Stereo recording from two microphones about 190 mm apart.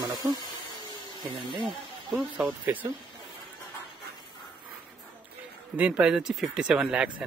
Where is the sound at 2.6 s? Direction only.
10° right (ahead or behind).